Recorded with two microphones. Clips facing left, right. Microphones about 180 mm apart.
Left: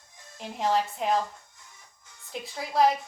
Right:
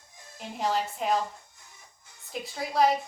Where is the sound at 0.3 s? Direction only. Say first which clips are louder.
Left 2 dB; centre (ahead or behind).